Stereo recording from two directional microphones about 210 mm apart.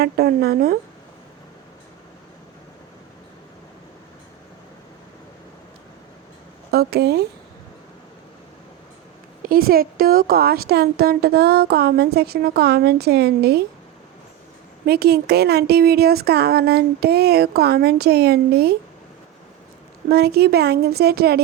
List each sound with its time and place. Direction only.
0.0 s a woman's voice: 45° right (ahead or behind)
6.7 s a woman's voice: 50° right (ahead or behind)
9.4 s a woman's voice: 45° right (ahead or behind)
14.8 s a woman's voice: 50° right (ahead or behind)
20.1 s a woman's voice: 50° right (ahead or behind)